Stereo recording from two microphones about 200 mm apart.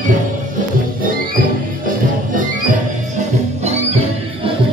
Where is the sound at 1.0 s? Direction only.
45° right (ahead or behind).